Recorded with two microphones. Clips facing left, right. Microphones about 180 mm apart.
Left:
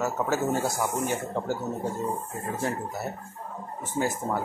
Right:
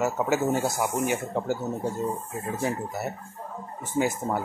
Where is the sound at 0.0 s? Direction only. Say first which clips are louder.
Right 2 dB; 10° right (ahead or behind).